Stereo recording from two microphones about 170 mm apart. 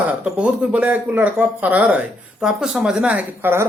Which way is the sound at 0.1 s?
5° right (ahead or behind).